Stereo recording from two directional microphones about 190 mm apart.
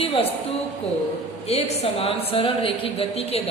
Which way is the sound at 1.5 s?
35° left (ahead or behind).